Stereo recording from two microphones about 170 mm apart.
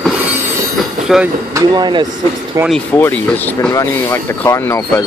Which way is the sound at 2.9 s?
10° left (ahead or behind).